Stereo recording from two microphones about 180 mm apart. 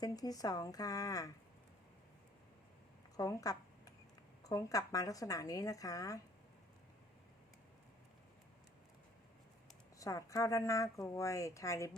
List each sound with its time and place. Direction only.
0.0 s speech: 20° left (ahead or behind)
3.2 s a sound: 20° left (ahead or behind)
4.4 s speech: 20° left (ahead or behind)
10.0 s speech: 20° left (ahead or behind)